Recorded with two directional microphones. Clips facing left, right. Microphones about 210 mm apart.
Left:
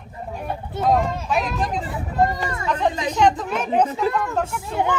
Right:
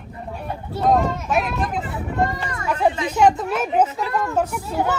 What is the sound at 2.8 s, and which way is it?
Speech, 10° right (ahead or behind).